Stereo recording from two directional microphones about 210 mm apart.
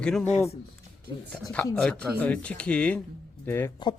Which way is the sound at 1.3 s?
5° left (ahead or behind).